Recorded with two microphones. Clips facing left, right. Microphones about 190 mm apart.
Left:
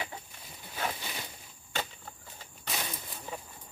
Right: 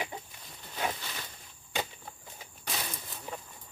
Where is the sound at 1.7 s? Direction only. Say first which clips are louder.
Right 2 dB; 10° right (ahead or behind).